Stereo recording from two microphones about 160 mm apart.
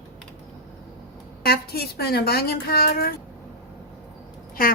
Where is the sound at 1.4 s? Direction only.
80° left.